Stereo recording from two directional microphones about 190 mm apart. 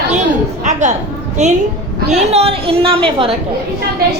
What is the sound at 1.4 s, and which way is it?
A woman's voice, 35° right (ahead or behind).